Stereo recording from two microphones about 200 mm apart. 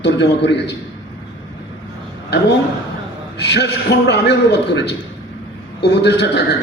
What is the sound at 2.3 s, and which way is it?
A man's voice, 60° left (ahead or behind).